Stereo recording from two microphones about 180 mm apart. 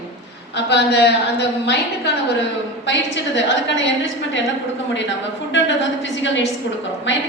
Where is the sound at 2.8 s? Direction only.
85° left.